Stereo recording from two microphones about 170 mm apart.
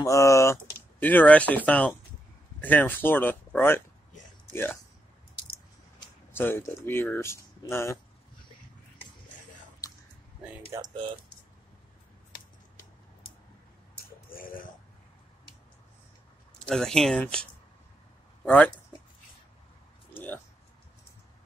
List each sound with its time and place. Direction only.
0.0 s speech: 20° left (ahead or behind)
6.3 s speech: 15° left (ahead or behind)
9.8 s squish: 20° left (ahead or behind)
10.7 s speech: 20° right (ahead or behind)
14.3 s a sound: 55° left (ahead or behind)
16.5 s speech: 5° left (ahead or behind)
20.2 s a sound: 10° left (ahead or behind)